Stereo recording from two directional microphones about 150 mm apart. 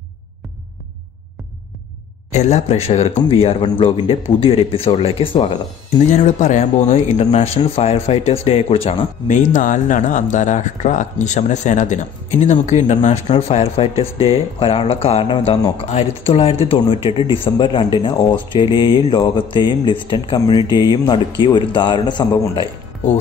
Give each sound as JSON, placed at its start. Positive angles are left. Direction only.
{"t": 2.3, "sound": "speech", "side_deg": 50}
{"t": 6.2, "sound": "speech", "side_deg": 50}
{"t": 9.3, "sound": "speech", "side_deg": 60}